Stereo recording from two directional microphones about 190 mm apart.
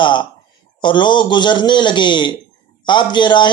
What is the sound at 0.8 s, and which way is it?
Speech, 25° left (ahead or behind).